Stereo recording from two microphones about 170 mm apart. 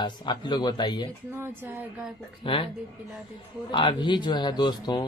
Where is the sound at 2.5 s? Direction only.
30° left (ahead or behind).